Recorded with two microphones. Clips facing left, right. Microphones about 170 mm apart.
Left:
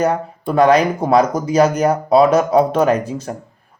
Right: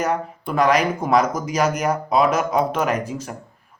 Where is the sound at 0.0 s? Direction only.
35° left (ahead or behind).